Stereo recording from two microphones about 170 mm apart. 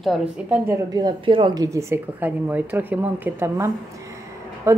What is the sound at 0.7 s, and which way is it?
A woman's voice, 25° right (ahead or behind).